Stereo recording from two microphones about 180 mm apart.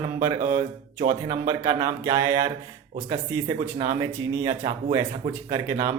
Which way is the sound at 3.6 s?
15° right (ahead or behind).